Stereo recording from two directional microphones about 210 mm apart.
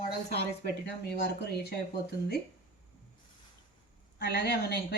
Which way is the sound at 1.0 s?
50° left (ahead or behind).